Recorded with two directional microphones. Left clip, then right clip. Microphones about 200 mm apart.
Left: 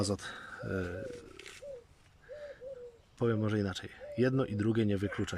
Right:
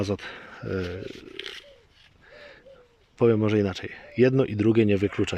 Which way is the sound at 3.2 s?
20° right (ahead or behind).